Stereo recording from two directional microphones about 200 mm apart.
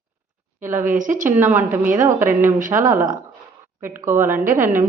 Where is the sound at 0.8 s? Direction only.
40° right (ahead or behind).